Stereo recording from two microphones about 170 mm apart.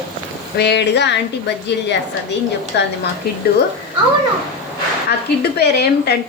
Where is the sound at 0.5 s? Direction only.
80° left.